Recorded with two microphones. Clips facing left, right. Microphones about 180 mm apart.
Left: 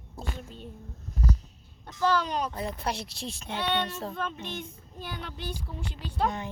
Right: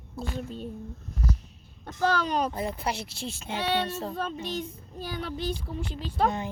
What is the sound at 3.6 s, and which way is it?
A child's voice, 40° right (ahead or behind).